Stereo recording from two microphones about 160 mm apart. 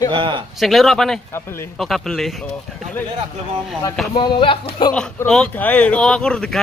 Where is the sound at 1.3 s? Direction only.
15° left (ahead or behind).